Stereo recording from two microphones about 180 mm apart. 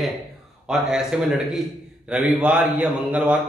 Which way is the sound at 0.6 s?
5° right (ahead or behind).